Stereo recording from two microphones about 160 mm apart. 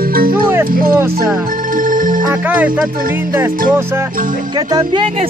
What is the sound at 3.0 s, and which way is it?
Speech, 60° right (ahead or behind).